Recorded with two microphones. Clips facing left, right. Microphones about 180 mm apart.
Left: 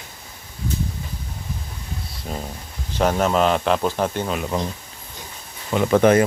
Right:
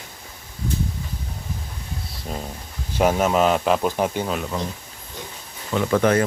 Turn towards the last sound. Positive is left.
turn(degrees=20)  # may be behind; listen again after turning